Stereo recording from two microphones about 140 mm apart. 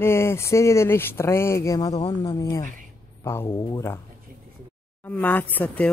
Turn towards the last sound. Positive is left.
turn(degrees=10)  # may be behind; listen again after turning